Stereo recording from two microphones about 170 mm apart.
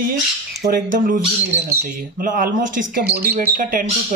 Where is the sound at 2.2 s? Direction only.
55° right (ahead or behind).